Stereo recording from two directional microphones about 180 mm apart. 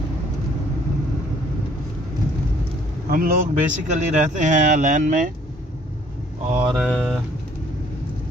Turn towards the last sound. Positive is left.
turn(degrees=-5)  # may be behind; listen again after turning